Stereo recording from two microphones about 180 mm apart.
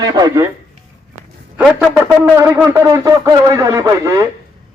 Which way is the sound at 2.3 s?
20° right (ahead or behind).